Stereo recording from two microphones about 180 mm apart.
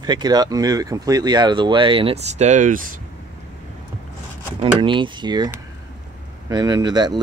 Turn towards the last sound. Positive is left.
turn(degrees=-25)  # may be behind; listen again after turning